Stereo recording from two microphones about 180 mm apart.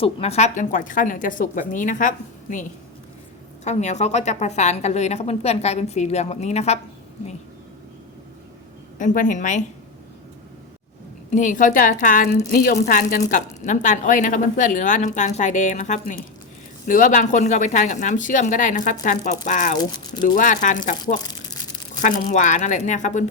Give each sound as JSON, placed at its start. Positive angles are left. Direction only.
{"t": 0.0, "sound": "a woman's voice", "side_deg": 35}
{"t": 9.0, "sound": "a woman's voice", "side_deg": 45}
{"t": 11.3, "sound": "a woman's voice", "side_deg": 45}
{"t": 22.0, "sound": "a woman's voice", "side_deg": 45}